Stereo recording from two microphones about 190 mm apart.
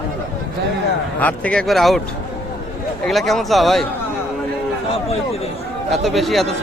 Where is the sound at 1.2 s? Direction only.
5° left (ahead or behind).